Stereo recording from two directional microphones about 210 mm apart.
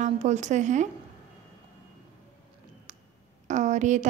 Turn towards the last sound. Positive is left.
turn(degrees=-35)  # may be behind; listen again after turning